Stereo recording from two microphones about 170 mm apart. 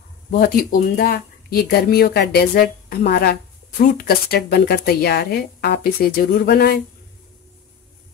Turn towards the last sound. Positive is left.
turn(degrees=65)  # may be behind; listen again after turning